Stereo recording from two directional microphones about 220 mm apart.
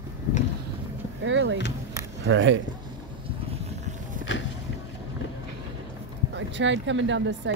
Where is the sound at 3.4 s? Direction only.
30° right (ahead or behind).